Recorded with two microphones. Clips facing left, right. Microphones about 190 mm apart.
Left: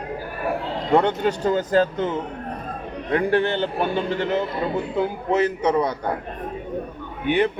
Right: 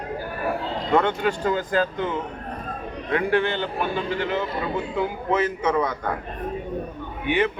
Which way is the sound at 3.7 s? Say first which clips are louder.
Left 3 dB; 20° left (ahead or behind).